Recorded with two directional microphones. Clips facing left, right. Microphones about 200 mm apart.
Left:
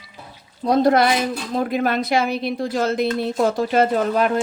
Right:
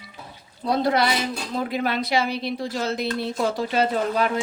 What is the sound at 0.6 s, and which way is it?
A woman's voice, 45° left (ahead or behind).